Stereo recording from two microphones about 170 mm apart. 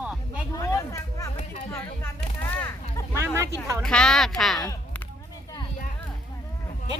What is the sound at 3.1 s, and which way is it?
Speech, 15° right (ahead or behind).